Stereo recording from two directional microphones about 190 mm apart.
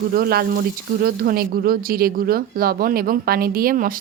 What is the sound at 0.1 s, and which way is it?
Speech, 55° right (ahead or behind).